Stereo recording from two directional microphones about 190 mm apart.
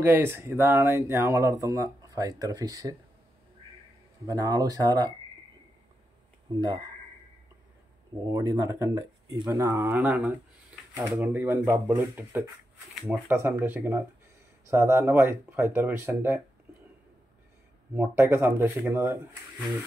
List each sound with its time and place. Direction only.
0.0 s speech: 10° right (ahead or behind)
4.3 s speech: 20° right (ahead or behind)
6.5 s speech: 20° right (ahead or behind)
8.3 s speech: 15° right (ahead or behind)
17.9 s speech: 10° right (ahead or behind)